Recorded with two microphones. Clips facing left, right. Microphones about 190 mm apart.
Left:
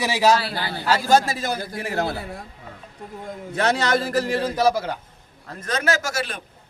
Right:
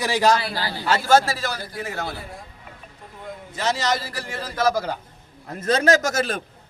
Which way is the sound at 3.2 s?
60° left (ahead or behind).